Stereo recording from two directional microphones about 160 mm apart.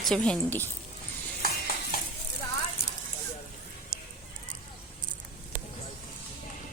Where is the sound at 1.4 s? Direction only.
70° left (ahead or behind).